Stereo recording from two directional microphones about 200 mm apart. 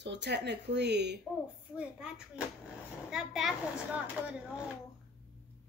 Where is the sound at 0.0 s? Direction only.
60° right (ahead or behind).